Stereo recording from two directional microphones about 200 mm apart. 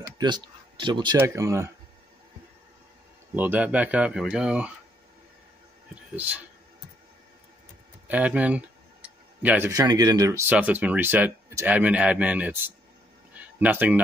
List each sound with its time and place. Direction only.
0.0 s speech: 20° right (ahead or behind)
3.3 s speech: 10° right (ahead or behind)
6.1 s speech: 10° right (ahead or behind)
8.1 s speech: 5° right (ahead or behind)
13.3 s a sound: 5° right (ahead or behind)